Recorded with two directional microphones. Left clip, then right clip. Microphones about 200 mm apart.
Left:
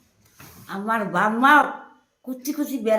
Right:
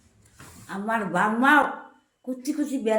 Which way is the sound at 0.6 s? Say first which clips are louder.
Left 3 dB; 20° left (ahead or behind).